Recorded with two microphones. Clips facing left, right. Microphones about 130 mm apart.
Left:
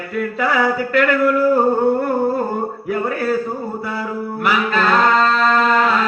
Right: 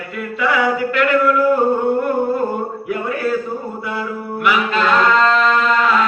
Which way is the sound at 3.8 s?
40° left (ahead or behind).